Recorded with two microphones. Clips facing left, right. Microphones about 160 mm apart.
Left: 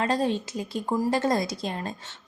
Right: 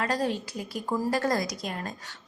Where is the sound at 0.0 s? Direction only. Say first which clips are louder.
Left 3 dB; 25° left (ahead or behind).